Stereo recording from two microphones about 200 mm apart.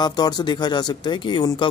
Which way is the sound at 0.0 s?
20° left (ahead or behind).